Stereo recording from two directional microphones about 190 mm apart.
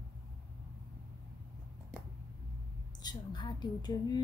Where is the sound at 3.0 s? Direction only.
20° left (ahead or behind).